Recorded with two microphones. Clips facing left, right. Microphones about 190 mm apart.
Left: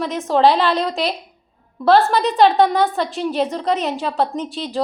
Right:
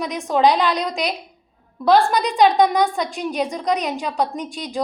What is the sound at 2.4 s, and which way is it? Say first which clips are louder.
A woman's voice: left 1 dB; 15° right (ahead or behind).